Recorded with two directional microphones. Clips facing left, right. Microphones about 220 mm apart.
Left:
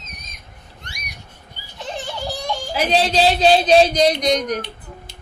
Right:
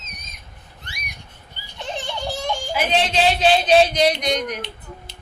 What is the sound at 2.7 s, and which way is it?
Speech, 35° left (ahead or behind).